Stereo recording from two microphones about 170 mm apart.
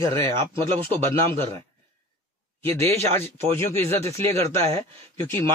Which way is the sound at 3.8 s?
15° left (ahead or behind).